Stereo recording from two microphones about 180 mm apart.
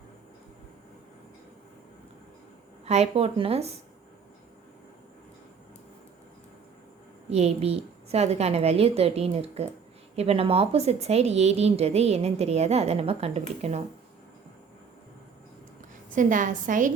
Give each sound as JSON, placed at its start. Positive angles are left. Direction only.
{"t": 2.8, "sound": "a woman's voice", "side_deg": -35}
{"t": 7.3, "sound": "a woman's voice", "side_deg": -35}
{"t": 16.0, "sound": "a woman's voice", "side_deg": -45}